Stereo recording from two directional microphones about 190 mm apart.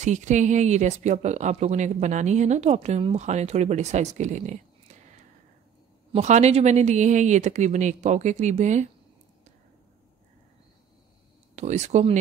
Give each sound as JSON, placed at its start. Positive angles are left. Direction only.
{"t": 0.0, "sound": "speech", "side_deg": -40}
{"t": 6.1, "sound": "speech", "side_deg": -35}
{"t": 11.5, "sound": "speech", "side_deg": -35}